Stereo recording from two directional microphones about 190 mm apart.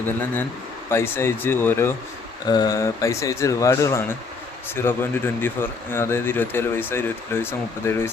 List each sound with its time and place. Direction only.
0.9 s speech: 10° left (ahead or behind)